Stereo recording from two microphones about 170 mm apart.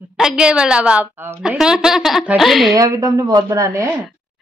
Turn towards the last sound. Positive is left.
turn(degrees=-20)  # may be behind; listen again after turning